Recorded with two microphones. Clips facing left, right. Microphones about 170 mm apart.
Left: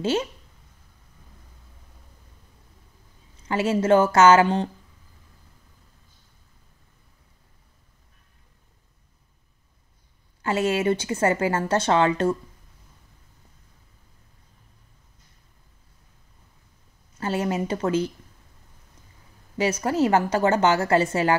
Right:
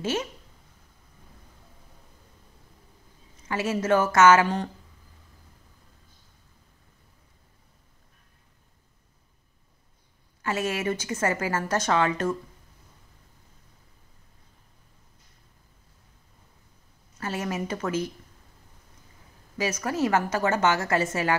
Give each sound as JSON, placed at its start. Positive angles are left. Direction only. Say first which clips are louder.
{"t": 0.0, "sound": "a woman's voice", "louder": "left 4 dB", "side_deg": 30}
{"t": 3.4, "sound": "a woman's voice", "louder": "left 5 dB", "side_deg": 30}
{"t": 10.4, "sound": "a woman's voice", "louder": "left 5 dB", "side_deg": 30}
{"t": 17.2, "sound": "a woman's voice", "louder": "left 5 dB", "side_deg": 30}
{"t": 19.5, "sound": "a woman's voice", "louder": "left 5 dB", "side_deg": 30}